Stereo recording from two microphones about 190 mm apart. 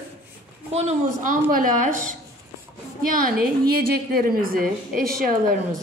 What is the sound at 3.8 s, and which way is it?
A woman's voice, 50° right (ahead or behind).